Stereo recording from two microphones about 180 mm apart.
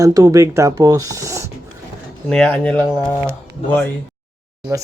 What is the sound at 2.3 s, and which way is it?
Speech, 5° left (ahead or behind).